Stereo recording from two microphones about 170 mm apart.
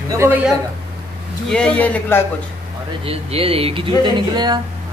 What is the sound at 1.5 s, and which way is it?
Speech, 5° left (ahead or behind).